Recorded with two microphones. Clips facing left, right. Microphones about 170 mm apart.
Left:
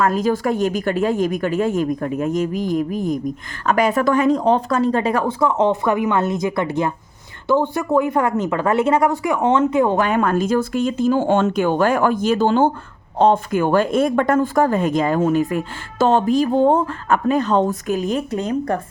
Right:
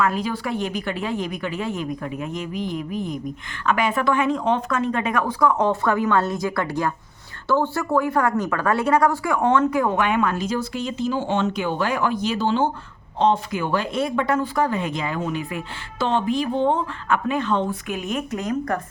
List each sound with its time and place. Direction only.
0.0 s speech: 40° left (ahead or behind)